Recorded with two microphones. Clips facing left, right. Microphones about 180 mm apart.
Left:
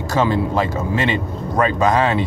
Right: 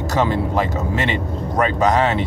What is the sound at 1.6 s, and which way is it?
Speech, 20° right (ahead or behind).